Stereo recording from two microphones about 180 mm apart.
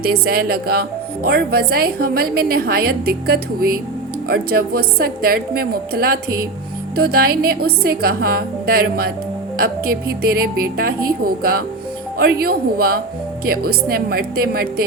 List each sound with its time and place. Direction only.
0.0 s speech: 60° right (ahead or behind)